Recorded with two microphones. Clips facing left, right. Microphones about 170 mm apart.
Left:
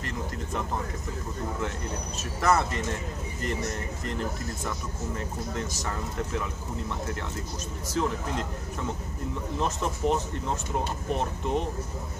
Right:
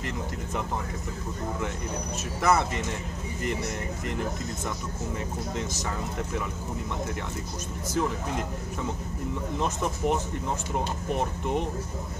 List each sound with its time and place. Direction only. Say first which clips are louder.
2.4 s speech: even; 15° right (ahead or behind)
5.6 s speech: right 1 dB; 20° right (ahead or behind)
7.9 s speech: even; 15° right (ahead or behind)
9.6 s speech: left 1 dB; 15° right (ahead or behind)
11.1 s speech: right 1 dB; 15° right (ahead or behind)